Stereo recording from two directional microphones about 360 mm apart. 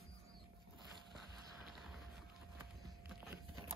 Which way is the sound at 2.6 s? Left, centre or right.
Centre.